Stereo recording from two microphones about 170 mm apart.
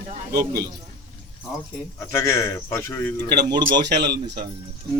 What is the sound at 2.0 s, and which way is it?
A man's voice, 15° left (ahead or behind).